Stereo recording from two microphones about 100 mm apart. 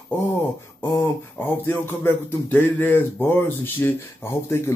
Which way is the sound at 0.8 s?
20° left (ahead or behind).